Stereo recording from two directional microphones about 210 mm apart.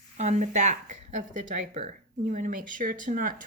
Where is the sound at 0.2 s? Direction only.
35° right (ahead or behind).